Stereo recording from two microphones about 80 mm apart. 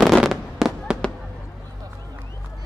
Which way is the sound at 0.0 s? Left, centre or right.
Centre.